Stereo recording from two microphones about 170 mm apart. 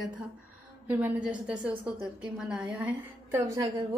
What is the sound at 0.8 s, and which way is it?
A woman's voice, 10° right (ahead or behind).